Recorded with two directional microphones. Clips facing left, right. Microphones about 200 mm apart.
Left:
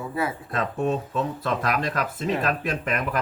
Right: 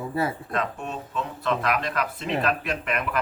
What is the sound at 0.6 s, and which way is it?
Speech, 45° left (ahead or behind).